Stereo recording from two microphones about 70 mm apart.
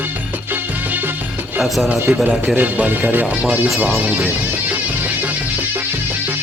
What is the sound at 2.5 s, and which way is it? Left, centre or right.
Speech, right.